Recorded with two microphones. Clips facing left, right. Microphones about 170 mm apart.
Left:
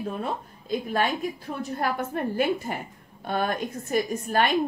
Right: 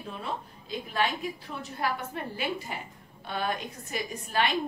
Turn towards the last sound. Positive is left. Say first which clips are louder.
# left 5 dB
turn(degrees=50)  # may be behind; listen again after turning